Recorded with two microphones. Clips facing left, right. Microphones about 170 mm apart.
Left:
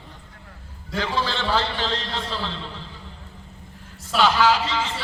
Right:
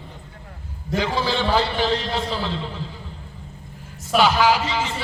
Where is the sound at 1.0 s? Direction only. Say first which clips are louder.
Right 3 dB; 15° right (ahead or behind).